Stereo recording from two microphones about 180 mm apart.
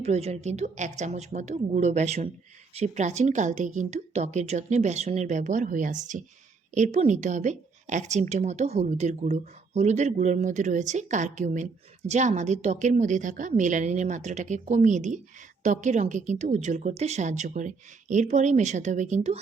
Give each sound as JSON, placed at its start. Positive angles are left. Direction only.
{"t": 0.0, "sound": "a woman's voice", "side_deg": -35}